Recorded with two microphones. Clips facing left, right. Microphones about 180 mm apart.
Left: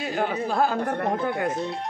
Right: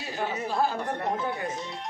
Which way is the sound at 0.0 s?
60° left (ahead or behind).